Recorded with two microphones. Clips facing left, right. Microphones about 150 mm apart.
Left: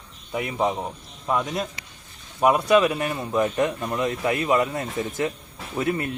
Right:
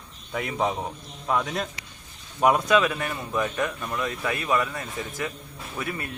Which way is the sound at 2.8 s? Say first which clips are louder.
Left 4 dB; 15° left (ahead or behind).